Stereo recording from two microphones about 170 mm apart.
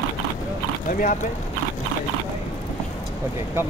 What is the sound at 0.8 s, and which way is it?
Speech, 55° left (ahead or behind).